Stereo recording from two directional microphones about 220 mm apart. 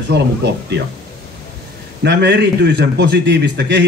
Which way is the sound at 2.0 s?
50° right (ahead or behind).